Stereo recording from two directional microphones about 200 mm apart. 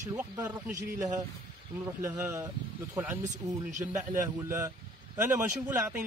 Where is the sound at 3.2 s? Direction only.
35° right (ahead or behind).